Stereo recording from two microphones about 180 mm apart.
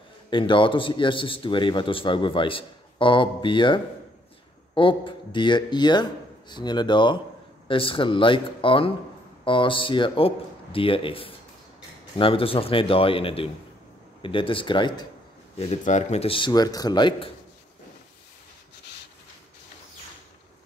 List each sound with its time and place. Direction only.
0.3 s a man's voice: 25° left (ahead or behind)